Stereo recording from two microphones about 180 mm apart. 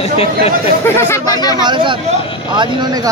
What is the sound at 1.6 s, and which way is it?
Speech, 25° right (ahead or behind).